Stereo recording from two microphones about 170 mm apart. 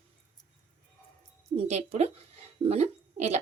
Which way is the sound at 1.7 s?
40° right (ahead or behind).